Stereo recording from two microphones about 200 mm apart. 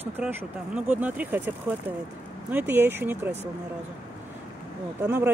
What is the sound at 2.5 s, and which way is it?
Speech, 10° right (ahead or behind).